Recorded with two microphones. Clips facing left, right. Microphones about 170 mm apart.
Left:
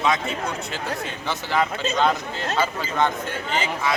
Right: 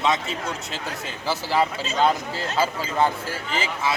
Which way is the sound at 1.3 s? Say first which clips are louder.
Right 1 dB; 30° right (ahead or behind).